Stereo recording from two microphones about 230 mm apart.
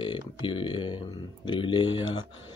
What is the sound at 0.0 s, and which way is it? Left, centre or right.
Speech, left.